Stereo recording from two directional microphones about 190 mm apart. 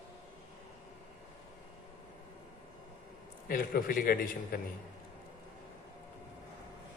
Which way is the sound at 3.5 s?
50° left (ahead or behind).